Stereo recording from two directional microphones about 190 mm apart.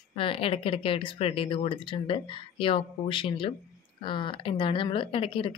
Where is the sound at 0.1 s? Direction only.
30° left (ahead or behind).